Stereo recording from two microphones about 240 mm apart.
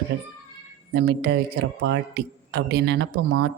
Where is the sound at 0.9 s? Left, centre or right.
Right.